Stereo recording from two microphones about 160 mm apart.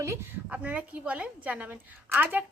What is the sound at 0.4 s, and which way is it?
A woman's voice, 10° right (ahead or behind).